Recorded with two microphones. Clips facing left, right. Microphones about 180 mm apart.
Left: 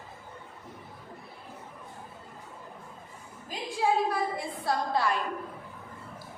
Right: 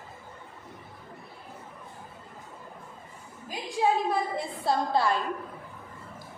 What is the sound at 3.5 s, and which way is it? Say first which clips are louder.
A woman's voice: right 2 dB; 20° right (ahead or behind).